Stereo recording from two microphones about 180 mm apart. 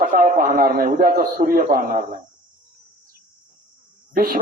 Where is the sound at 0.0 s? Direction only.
50° right (ahead or behind).